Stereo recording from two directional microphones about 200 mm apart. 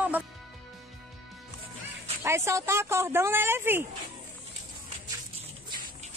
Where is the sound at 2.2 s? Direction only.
15° right (ahead or behind).